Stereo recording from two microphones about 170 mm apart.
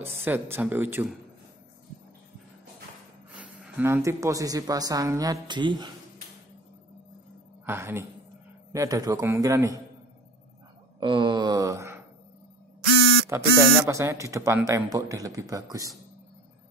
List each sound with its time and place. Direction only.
0.0 s speech: 15° right (ahead or behind)
3.3 s speech: 10° right (ahead or behind); by 5.9 s 25° right (ahead or behind)
7.6 s speech: 15° right (ahead or behind)
11.0 s wail: 30° right (ahead or behind)
13.3 s speech: 15° right (ahead or behind)